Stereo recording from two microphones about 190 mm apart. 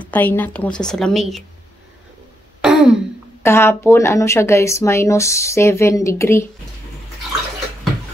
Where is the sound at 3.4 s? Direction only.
15° left (ahead or behind).